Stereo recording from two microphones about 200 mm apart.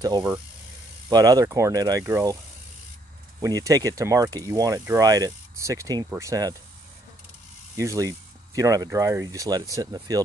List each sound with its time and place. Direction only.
0.0 s speech: 20° right (ahead or behind)
3.3 s speech: 15° right (ahead or behind)
7.7 s ratchet: 15° right (ahead or behind)
8.5 s speech: 15° right (ahead or behind)